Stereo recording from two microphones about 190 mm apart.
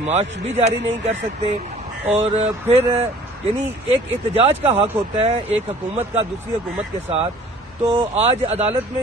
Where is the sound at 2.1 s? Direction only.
10° right (ahead or behind).